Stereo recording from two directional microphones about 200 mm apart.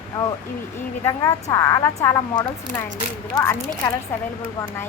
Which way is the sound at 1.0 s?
15° left (ahead or behind).